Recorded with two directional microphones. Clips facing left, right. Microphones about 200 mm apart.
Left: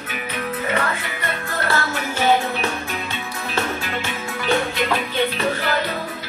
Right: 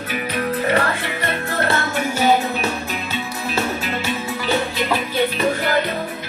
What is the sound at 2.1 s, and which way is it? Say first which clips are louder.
Music: right 1 dB; 10° right (ahead or behind).